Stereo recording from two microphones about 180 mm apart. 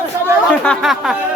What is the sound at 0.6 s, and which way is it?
Speech, centre (ahead or behind).